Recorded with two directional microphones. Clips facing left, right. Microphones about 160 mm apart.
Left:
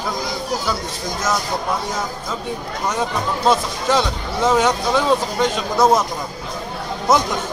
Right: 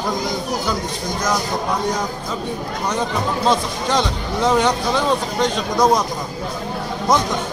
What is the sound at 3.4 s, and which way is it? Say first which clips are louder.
Speech: left 3 dB; 5° left (ahead or behind).